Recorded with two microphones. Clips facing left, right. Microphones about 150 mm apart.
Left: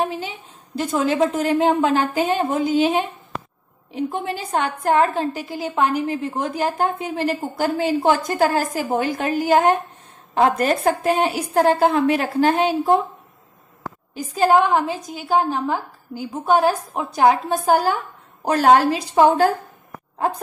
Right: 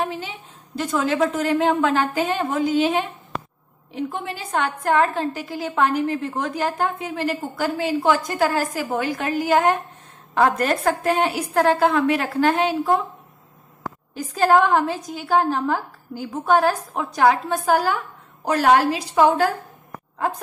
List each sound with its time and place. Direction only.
0.7 s a woman's voice: 20° left (ahead or behind)
14.1 s a woman's voice: 5° left (ahead or behind)
16.2 s a woman's voice: 15° left (ahead or behind)